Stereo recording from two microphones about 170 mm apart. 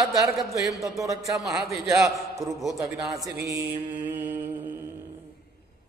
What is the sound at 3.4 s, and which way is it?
Mantra, 15° right (ahead or behind).